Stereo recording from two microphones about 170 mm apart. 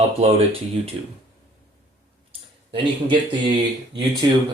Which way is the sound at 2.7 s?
30° right (ahead or behind).